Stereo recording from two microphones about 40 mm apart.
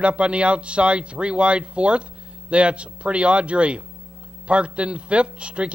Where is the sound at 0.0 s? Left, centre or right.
Right.